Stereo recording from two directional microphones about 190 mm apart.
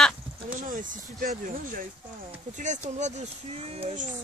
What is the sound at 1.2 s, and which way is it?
A child's voice, 45° right (ahead or behind).